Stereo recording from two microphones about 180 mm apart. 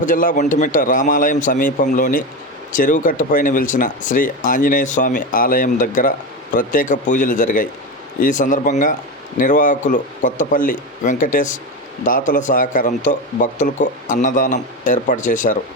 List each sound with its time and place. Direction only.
0.0 s speech: 45° left (ahead or behind)